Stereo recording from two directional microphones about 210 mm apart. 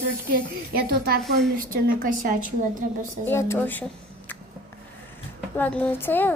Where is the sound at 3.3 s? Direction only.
10° left (ahead or behind).